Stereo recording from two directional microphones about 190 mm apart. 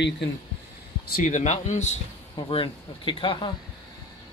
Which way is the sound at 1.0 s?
45° left (ahead or behind).